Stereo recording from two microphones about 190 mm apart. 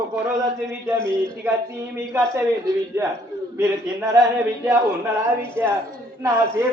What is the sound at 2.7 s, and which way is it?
Speech, 20° right (ahead or behind).